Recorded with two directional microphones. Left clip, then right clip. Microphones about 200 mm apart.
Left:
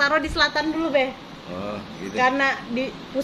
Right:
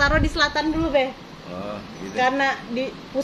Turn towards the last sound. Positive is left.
turn(degrees=-15)  # may be behind; listen again after turning